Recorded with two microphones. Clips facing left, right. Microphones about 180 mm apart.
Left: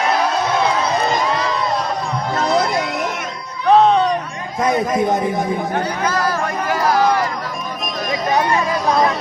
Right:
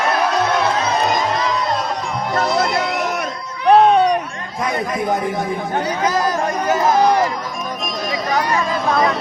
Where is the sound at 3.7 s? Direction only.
10° right (ahead or behind).